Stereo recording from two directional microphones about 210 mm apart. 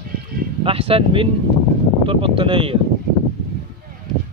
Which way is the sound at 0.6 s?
25° right (ahead or behind).